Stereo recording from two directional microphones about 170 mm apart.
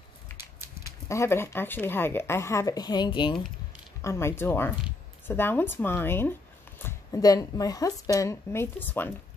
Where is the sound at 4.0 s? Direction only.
15° left (ahead or behind).